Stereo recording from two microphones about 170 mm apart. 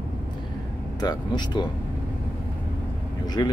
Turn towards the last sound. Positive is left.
turn(degrees=20)  # may be behind; listen again after turning